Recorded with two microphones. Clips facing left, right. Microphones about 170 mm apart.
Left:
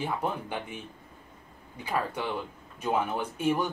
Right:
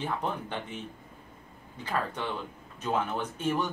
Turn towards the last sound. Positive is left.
turn(degrees=10)  # may be behind; listen again after turning